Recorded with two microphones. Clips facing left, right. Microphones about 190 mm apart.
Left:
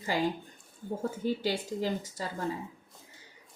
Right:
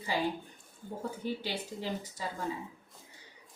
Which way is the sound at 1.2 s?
45° left (ahead or behind).